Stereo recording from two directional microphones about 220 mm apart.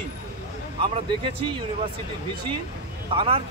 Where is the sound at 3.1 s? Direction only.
25° right (ahead or behind).